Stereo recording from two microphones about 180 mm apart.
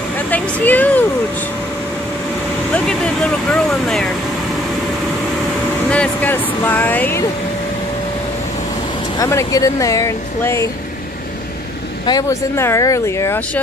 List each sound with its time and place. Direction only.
0.3 s a sound: 10° left (ahead or behind)
3.7 s speech: centre (ahead or behind)
5.9 s speech: 10° left (ahead or behind)
9.2 s speech: 15° left (ahead or behind)
12.1 s speech: 20° left (ahead or behind)